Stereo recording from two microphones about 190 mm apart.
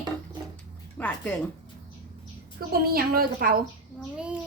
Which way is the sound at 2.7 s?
50° right (ahead or behind).